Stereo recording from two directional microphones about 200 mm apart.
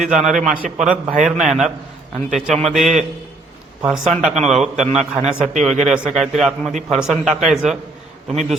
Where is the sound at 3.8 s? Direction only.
5° right (ahead or behind).